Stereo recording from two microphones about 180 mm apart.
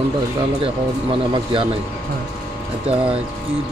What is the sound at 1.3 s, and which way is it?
Speech, 30° right (ahead or behind).